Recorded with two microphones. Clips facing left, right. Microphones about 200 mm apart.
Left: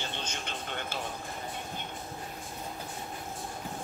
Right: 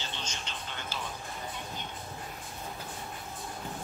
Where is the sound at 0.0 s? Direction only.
55° left (ahead or behind).